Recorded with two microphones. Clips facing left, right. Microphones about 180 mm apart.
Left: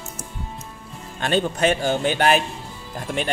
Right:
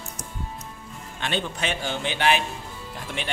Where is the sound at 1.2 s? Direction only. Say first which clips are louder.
Left 8 dB; 45° left (ahead or behind).